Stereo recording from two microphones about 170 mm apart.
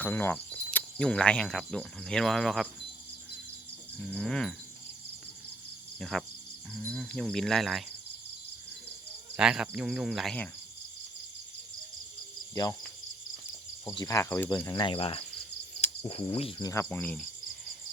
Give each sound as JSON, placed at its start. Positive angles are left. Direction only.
{"t": 0.0, "sound": "cricket", "side_deg": 10}
{"t": 4.0, "sound": "cricket", "side_deg": 5}
{"t": 6.0, "sound": "speech", "side_deg": 0}
{"t": 6.8, "sound": "cricket", "side_deg": 5}
{"t": 9.3, "sound": "cricket", "side_deg": -5}
{"t": 13.8, "sound": "speech", "side_deg": 20}
{"t": 14.8, "sound": "cricket", "side_deg": 35}
{"t": 16.9, "sound": "speech", "side_deg": 10}